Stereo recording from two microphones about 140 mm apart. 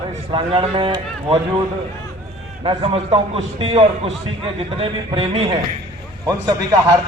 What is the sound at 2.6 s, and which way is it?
A man's voice, 40° right (ahead or behind).